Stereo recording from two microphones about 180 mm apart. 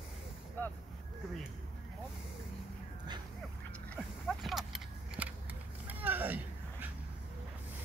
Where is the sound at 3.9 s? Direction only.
Centre (ahead or behind).